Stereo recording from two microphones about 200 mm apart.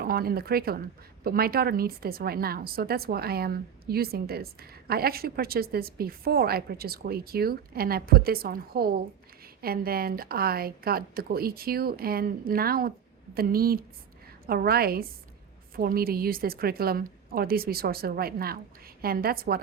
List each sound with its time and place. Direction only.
0.0 s a woman's voice: 50° right (ahead or behind)